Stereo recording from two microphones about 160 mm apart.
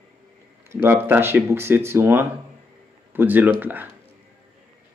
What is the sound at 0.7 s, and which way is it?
Speech, 15° right (ahead or behind).